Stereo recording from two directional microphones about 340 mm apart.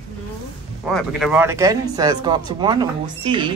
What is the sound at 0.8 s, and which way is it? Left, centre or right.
Speech, centre.